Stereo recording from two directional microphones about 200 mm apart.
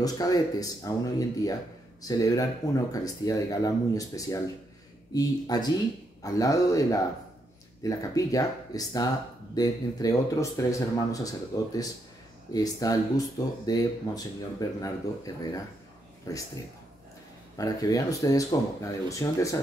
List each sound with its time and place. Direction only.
0.0 s speech: 20° left (ahead or behind)
16.3 s speech: 15° left (ahead or behind)
17.6 s speech: 15° left (ahead or behind)